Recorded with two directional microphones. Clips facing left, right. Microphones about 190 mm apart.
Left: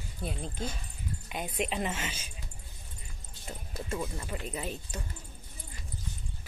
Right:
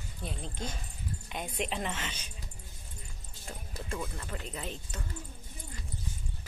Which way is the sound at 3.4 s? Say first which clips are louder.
Left 3 dB; 10° left (ahead or behind).